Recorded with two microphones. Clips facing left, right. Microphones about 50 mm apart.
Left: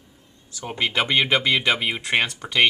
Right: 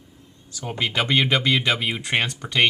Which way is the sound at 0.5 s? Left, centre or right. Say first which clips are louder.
Left 1 dB; centre.